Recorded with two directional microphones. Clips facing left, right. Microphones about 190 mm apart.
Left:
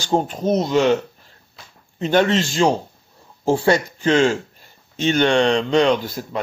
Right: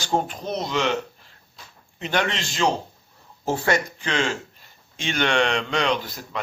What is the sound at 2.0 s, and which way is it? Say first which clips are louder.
Speech: left 8 dB; 40° left (ahead or behind).